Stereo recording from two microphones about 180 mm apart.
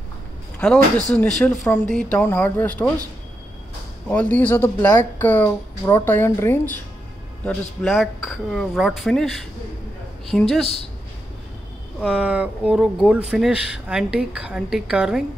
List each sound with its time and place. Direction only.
1.1 s speech: 5° left (ahead or behind)
4.1 s speech: 10° left (ahead or behind)
12.0 s speech: 5° right (ahead or behind)